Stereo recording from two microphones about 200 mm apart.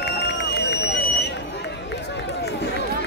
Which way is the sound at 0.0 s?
55° left (ahead or behind).